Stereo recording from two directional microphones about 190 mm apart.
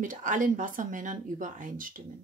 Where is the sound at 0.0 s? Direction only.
40° right (ahead or behind).